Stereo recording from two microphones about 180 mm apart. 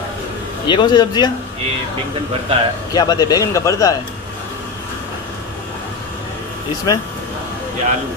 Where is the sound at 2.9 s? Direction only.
20° left (ahead or behind).